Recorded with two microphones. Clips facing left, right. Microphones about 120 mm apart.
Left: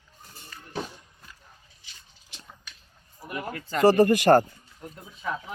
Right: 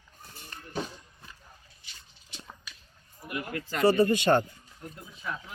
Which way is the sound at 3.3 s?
40° left (ahead or behind).